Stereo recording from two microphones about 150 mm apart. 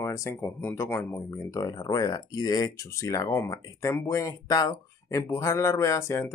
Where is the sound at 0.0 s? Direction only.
20° left (ahead or behind).